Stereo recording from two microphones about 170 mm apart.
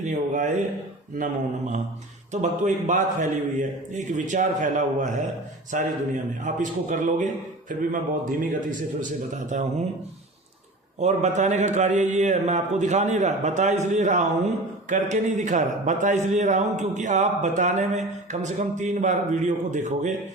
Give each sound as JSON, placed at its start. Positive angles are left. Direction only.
{"t": 0.0, "sound": "a man's voice", "side_deg": -45}
{"t": 11.0, "sound": "a man's voice", "side_deg": -45}